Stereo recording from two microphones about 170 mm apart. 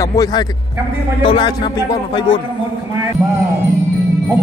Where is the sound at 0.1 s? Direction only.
20° left (ahead or behind).